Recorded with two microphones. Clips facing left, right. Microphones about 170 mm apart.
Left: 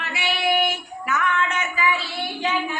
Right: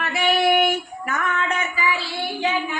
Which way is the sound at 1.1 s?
45° right (ahead or behind).